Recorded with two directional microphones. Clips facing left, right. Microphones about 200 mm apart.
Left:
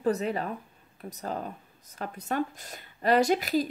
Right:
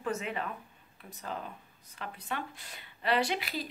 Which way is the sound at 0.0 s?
35° left (ahead or behind).